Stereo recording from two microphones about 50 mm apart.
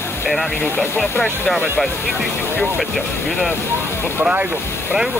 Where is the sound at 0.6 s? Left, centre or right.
Left.